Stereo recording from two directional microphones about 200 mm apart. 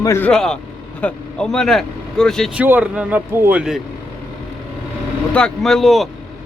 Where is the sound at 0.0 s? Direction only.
10° left (ahead or behind).